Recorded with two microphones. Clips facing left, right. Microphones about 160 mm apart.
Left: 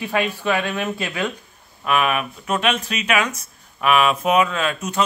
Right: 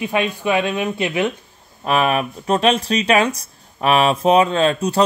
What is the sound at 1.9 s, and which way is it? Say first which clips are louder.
Speech: right 3 dB; 35° right (ahead or behind).